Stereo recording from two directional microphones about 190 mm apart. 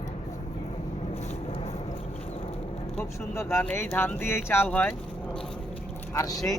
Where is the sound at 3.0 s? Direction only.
15° left (ahead or behind).